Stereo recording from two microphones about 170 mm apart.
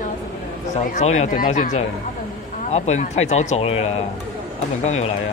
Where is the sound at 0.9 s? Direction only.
40° left (ahead or behind).